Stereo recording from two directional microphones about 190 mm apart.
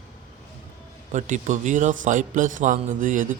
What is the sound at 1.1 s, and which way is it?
A man's voice, 40° right (ahead or behind).